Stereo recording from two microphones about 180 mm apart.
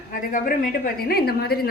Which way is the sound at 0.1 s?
50° left (ahead or behind).